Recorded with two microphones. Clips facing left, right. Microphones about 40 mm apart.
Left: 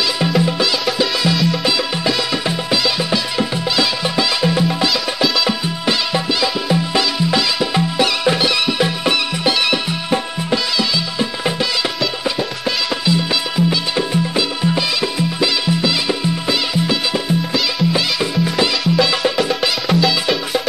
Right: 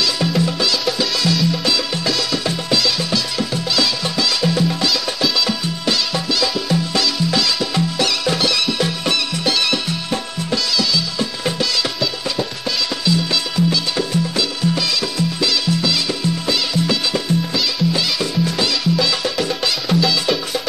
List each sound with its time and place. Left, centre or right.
0.2 s music: centre
13.0 s music: centre